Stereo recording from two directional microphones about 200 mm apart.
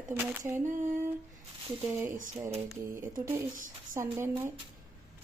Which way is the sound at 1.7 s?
10° right (ahead or behind).